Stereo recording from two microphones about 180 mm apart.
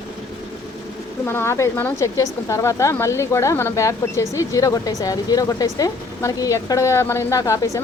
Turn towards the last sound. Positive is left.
turn(degrees=15)  # may be behind; listen again after turning